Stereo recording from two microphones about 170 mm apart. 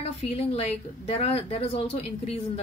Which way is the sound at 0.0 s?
35° left (ahead or behind).